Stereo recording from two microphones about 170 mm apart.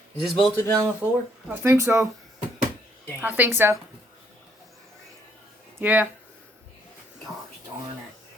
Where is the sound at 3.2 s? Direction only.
10° right (ahead or behind).